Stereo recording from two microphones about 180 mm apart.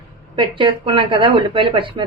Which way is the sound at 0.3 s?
25° right (ahead or behind).